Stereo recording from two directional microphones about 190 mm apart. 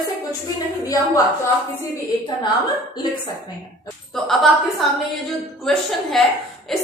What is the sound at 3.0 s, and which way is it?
Speech, 25° left (ahead or behind).